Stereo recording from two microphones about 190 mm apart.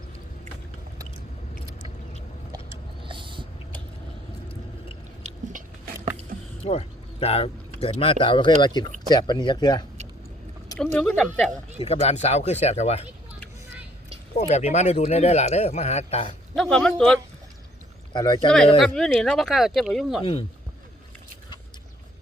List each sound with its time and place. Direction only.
3.0 s vehicle: 25° right (ahead or behind)
6.7 s speech: 30° left (ahead or behind)
10.8 s speech: 5° left (ahead or behind)
11.8 s speech: 30° left (ahead or behind)
14.3 s speech: 35° left (ahead or behind)
16.6 s speech: 5° left (ahead or behind)
18.1 s speech: 25° left (ahead or behind)
18.8 s speech: centre (ahead or behind)